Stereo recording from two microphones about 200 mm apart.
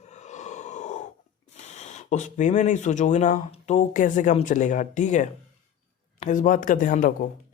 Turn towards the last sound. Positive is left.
turn(degrees=40)  # may be behind; listen again after turning